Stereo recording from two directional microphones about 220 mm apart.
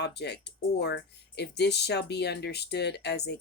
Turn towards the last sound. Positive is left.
turn(degrees=50)  # may be behind; listen again after turning